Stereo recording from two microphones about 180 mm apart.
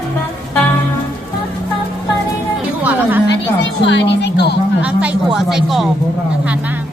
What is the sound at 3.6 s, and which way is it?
Speech, 80° left.